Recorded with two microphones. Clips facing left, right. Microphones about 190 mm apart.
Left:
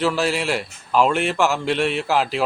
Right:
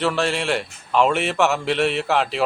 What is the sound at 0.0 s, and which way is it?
Speech, centre (ahead or behind).